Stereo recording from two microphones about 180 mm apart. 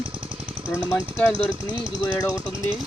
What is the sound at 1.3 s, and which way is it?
Speech, 30° right (ahead or behind).